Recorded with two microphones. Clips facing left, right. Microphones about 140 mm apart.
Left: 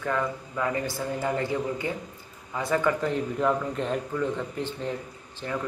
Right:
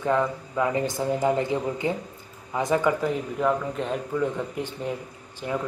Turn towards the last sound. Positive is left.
turn(degrees=-15)  # may be behind; listen again after turning